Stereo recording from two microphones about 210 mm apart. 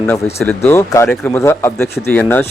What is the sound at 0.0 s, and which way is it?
Speech, 5° left (ahead or behind).